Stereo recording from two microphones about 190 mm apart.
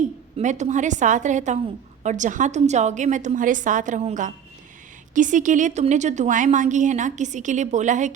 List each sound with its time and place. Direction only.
0.3 s a woman's voice: 40° right (ahead or behind)